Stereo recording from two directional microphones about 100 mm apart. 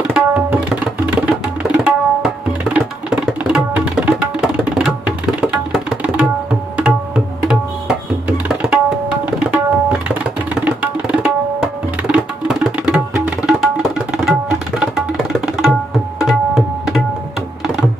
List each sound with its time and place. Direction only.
0.1 s tabla: 15° right (ahead or behind)
14.8 s tabla: 5° right (ahead or behind)